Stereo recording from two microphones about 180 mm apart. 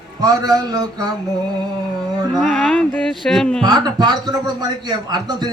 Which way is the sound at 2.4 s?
5° left (ahead or behind).